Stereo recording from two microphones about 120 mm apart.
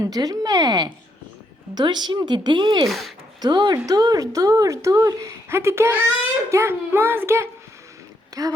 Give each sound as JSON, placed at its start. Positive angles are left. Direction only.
{"t": 0.0, "sound": "speech", "side_deg": -30}
{"t": 2.8, "sound": "speech", "side_deg": 0}
{"t": 3.4, "sound": "speech", "side_deg": -35}